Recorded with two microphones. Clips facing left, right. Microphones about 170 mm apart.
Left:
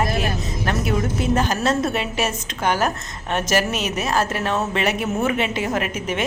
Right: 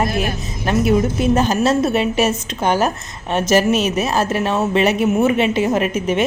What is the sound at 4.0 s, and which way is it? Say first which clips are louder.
A woman's voice: right 4 dB; 20° right (ahead or behind).